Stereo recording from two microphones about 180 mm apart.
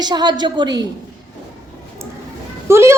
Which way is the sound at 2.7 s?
15° right (ahead or behind).